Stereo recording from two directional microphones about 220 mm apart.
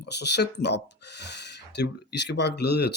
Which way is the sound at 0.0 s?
50° left (ahead or behind).